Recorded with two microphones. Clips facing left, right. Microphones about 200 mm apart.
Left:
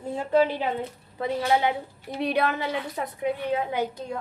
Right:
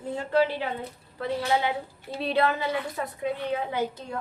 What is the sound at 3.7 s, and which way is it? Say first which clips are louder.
Speech: left 1 dB; 15° left (ahead or behind).